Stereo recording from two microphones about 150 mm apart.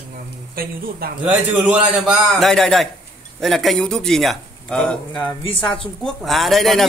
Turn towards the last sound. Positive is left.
turn(degrees=0)  # may be behind; listen again after turning